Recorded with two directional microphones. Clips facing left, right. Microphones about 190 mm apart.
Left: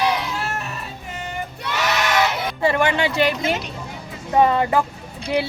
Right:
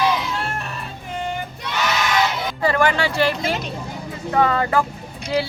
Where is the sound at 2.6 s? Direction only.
20° left (ahead or behind).